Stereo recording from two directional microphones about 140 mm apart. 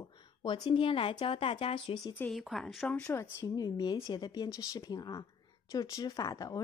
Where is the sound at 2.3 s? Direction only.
Centre (ahead or behind).